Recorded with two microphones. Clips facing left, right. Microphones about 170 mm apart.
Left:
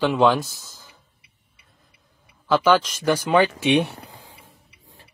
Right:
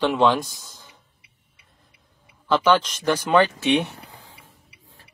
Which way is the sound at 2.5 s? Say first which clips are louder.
Left 1 dB; 10° left (ahead or behind).